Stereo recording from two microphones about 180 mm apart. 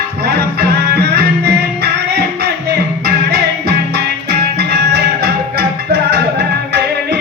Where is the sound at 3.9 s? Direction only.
65° right (ahead or behind).